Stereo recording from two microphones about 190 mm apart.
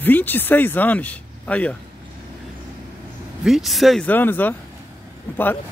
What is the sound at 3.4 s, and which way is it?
Speech, centre (ahead or behind).